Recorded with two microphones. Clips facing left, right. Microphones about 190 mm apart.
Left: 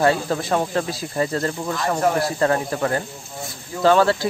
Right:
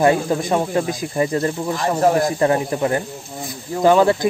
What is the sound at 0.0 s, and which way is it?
Speech, 15° right (ahead or behind).